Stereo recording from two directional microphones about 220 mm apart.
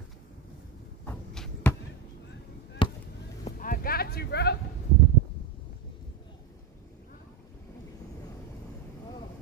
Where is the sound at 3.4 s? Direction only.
40° left (ahead or behind).